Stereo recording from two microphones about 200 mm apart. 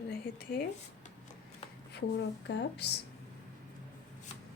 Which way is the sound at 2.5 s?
60° left (ahead or behind).